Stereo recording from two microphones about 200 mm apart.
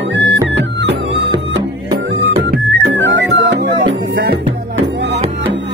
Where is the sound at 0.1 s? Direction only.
60° right (ahead or behind).